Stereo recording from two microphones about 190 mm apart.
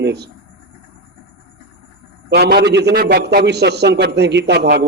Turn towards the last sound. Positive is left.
turn(degrees=-60)  # may be behind; listen again after turning